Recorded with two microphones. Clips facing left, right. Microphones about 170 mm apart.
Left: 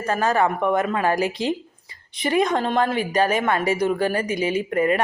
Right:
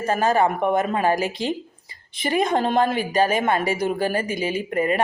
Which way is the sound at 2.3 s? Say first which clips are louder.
Even; 30° right (ahead or behind).